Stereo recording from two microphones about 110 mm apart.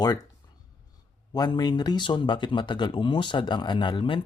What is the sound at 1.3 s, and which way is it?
Speech, 40° left (ahead or behind).